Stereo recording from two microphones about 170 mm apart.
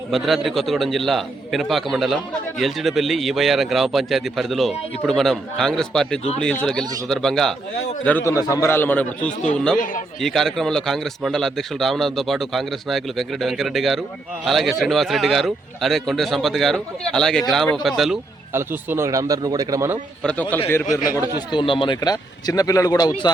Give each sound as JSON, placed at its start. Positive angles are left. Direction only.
{"t": 0.1, "sound": "a man's voice", "side_deg": 0}
{"t": 8.0, "sound": "a man's voice", "side_deg": 15}
{"t": 18.5, "sound": "a man's voice", "side_deg": -15}
{"t": 20.2, "sound": "a man's voice", "side_deg": 10}
{"t": 21.5, "sound": "speech", "side_deg": 30}